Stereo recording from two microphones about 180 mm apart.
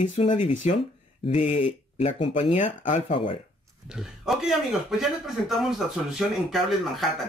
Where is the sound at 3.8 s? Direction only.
5° right (ahead or behind).